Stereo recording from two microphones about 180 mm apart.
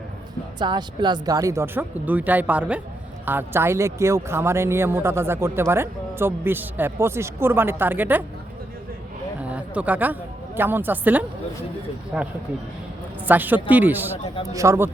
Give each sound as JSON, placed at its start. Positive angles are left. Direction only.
{"t": 0.6, "sound": "speech", "side_deg": -25}
{"t": 9.4, "sound": "a woman's voice", "side_deg": -10}